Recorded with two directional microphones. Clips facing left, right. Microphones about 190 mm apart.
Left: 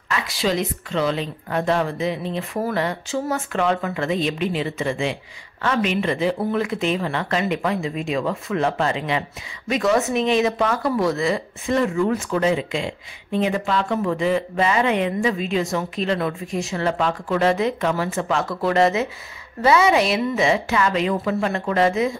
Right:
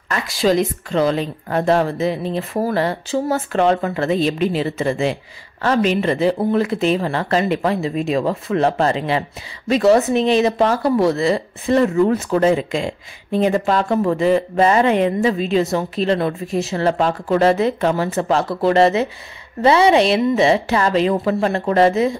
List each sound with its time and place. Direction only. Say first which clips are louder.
0.4 s speech: right 7 dB; 45° right (ahead or behind)